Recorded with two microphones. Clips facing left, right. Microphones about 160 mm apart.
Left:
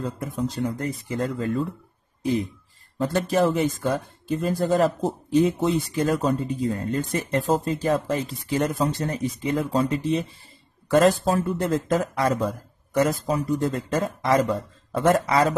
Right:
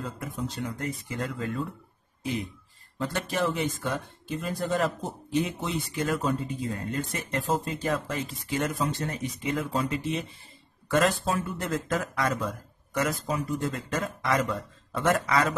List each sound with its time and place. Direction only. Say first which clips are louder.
0.0 s speech: left 6 dB; 35° left (ahead or behind)
3.0 s speech: left 7 dB; 35° left (ahead or behind)